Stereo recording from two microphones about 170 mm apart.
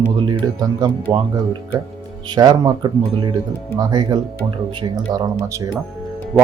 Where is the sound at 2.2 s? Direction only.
25° right (ahead or behind).